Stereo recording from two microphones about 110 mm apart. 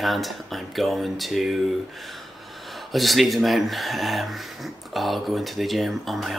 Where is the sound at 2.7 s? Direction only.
Centre (ahead or behind).